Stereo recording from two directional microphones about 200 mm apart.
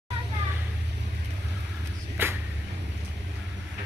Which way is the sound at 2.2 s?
10° right (ahead or behind).